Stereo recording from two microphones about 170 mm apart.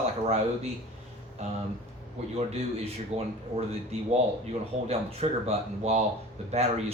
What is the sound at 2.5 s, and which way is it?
Speech, 35° right (ahead or behind).